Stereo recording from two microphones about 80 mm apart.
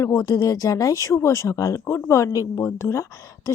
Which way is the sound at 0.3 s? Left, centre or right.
Left.